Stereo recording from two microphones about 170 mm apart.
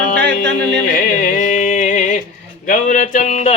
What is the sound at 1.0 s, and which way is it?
Music, 55° left (ahead or behind).